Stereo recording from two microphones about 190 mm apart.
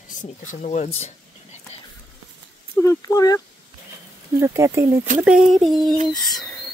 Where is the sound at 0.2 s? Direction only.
40° left (ahead or behind).